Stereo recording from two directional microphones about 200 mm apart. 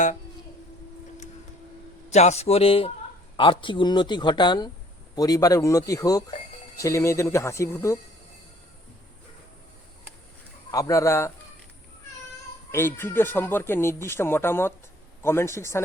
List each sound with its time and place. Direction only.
2.0 s speech: 35° left (ahead or behind); by 7.9 s 15° left (ahead or behind)
10.7 s speech: 15° left (ahead or behind)
12.7 s speech: 10° left (ahead or behind)